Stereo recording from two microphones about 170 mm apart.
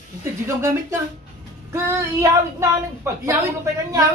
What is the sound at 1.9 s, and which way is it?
Child singing, 15° right (ahead or behind).